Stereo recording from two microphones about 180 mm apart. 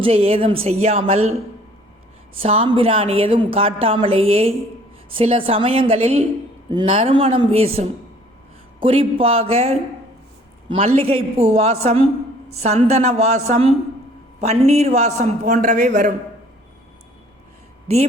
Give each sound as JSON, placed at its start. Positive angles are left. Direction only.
{"t": 0.0, "sound": "a woman's voice", "side_deg": -35}
{"t": 2.3, "sound": "a woman's voice", "side_deg": -30}